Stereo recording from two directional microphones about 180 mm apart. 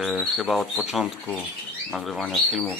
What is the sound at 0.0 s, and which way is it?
Speech, centre (ahead or behind).